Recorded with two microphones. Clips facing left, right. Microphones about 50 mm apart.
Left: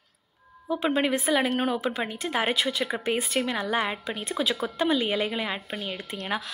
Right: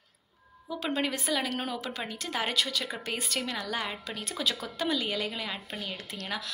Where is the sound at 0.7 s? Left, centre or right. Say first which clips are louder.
Left 6 dB; left.